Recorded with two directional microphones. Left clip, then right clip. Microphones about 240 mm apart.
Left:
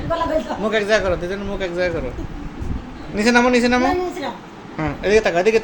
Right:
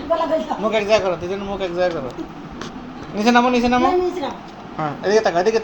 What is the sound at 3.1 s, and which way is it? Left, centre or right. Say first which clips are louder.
A man's voice: even; centre.